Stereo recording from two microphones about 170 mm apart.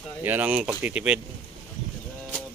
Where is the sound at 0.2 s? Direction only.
10° right (ahead or behind).